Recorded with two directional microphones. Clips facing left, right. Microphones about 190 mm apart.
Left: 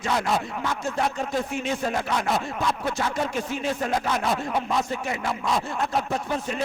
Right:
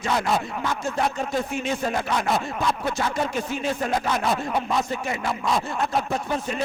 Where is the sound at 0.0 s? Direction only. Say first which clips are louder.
Right 1 dB; 15° right (ahead or behind).